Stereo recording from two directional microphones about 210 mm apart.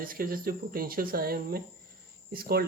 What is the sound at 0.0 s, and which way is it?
Speech, 45° right (ahead or behind).